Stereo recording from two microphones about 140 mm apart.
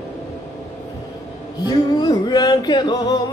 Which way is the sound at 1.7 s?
30° left (ahead or behind).